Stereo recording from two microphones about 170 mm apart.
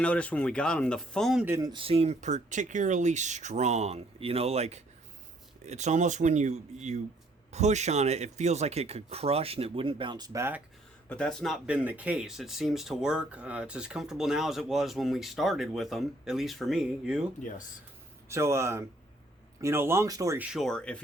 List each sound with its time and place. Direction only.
0.0 s speech: 5° left (ahead or behind)
1.5 s speech: 15° right (ahead or behind)
1.7 s speech: 35° right (ahead or behind); by 10.6 s 15° right (ahead or behind)
11.1 s speech: 5° left (ahead or behind)
18.3 s speech: 15° right (ahead or behind)
20.5 s speech: centre (ahead or behind)